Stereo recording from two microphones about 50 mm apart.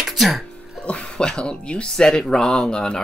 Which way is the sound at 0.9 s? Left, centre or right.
Centre.